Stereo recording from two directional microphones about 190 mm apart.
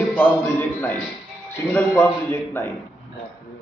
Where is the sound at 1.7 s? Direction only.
10° left (ahead or behind).